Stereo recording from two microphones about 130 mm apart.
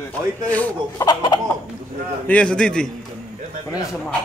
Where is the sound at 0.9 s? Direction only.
30° left (ahead or behind).